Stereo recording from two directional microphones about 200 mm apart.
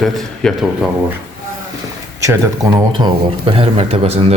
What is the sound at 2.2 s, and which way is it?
A man's voice, 15° right (ahead or behind).